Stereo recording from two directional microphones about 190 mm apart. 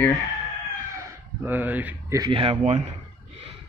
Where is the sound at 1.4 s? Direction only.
10° right (ahead or behind); by 2.8 s 35° right (ahead or behind).